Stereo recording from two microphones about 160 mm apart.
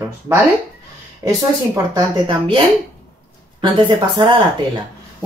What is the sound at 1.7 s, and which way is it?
Speech, 20° right (ahead or behind).